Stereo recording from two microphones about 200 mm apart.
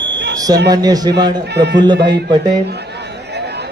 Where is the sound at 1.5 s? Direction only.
60° right (ahead or behind).